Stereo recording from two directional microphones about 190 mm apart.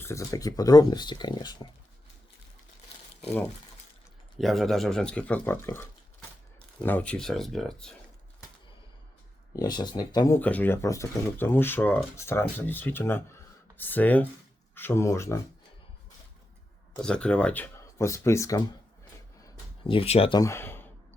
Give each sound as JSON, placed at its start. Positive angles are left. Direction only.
{"t": 0.0, "sound": "speech", "side_deg": 15}
{"t": 4.4, "sound": "speech", "side_deg": 0}
{"t": 9.5, "sound": "speech", "side_deg": 20}
{"t": 17.0, "sound": "speech", "side_deg": 5}
{"t": 19.9, "sound": "speech", "side_deg": 30}
{"t": 20.4, "sound": "speech", "side_deg": 15}